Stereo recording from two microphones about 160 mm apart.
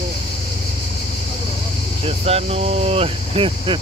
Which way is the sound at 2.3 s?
40° right (ahead or behind).